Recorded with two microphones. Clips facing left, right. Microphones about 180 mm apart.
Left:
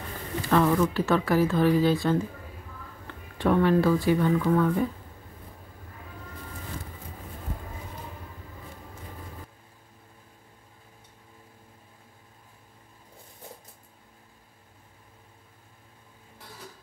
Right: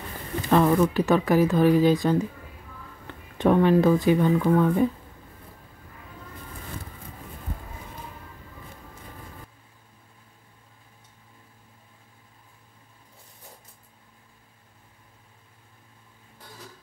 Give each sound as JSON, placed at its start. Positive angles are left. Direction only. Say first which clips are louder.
{"t": 0.4, "sound": "speech", "louder": "right 3 dB", "side_deg": -20}
{"t": 3.3, "sound": "speech", "louder": "right 3 dB", "side_deg": -20}